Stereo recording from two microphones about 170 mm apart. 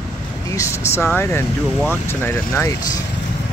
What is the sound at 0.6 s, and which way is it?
Speech, 15° left (ahead or behind).